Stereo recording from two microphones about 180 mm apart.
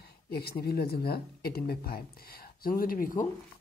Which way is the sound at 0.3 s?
60° left (ahead or behind).